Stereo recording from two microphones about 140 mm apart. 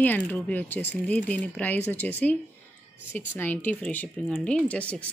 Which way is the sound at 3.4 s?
15° left (ahead or behind).